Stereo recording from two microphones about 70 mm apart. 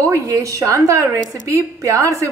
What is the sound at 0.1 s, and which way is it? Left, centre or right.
A woman's voice, right.